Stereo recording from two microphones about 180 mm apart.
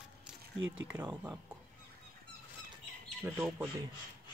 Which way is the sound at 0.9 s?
10° right (ahead or behind).